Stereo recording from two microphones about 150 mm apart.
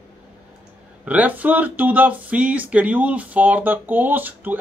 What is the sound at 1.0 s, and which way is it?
Speech, 10° right (ahead or behind).